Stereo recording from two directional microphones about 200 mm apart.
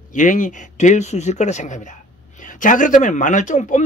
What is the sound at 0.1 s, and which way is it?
Speech, 40° left (ahead or behind).